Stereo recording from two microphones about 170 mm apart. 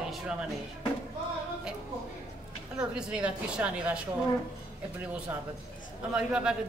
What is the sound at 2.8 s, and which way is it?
Speech, 5° right (ahead or behind).